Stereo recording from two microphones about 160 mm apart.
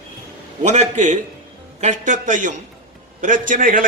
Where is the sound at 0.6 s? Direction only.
45° right (ahead or behind).